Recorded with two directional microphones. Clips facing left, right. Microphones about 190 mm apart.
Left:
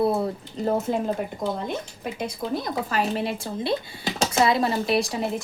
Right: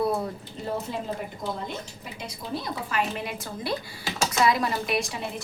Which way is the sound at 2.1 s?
50° left (ahead or behind).